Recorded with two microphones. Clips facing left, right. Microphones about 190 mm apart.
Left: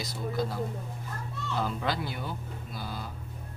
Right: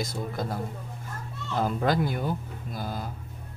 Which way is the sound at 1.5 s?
45° right (ahead or behind).